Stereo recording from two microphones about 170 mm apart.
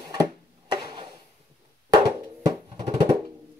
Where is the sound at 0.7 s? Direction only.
25° right (ahead or behind).